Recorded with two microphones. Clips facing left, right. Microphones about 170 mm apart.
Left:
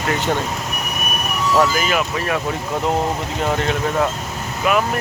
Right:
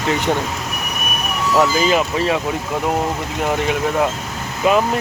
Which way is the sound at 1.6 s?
25° right (ahead or behind).